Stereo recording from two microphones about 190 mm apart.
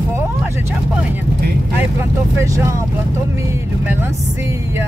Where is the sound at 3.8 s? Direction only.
10° right (ahead or behind).